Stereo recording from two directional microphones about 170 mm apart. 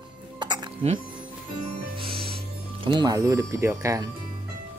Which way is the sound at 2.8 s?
25° right (ahead or behind).